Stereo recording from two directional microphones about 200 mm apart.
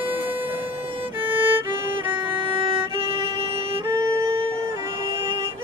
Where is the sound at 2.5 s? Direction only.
25° right (ahead or behind).